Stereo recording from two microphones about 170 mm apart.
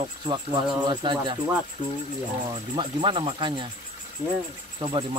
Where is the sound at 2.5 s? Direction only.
30° right (ahead or behind).